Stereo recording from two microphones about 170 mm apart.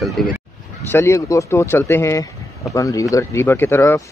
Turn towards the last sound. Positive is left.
turn(degrees=15)  # may be behind; listen again after turning